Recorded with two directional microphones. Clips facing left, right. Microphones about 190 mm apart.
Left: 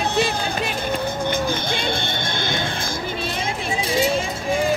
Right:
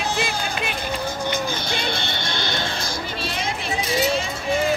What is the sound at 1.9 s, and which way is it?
Music, 50° left (ahead or behind).